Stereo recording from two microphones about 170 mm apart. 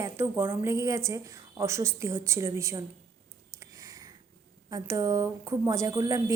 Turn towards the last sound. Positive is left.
turn(degrees=-20)  # may be behind; listen again after turning